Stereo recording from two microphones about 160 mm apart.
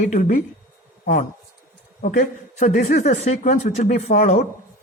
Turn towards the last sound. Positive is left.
turn(degrees=45)  # may be behind; listen again after turning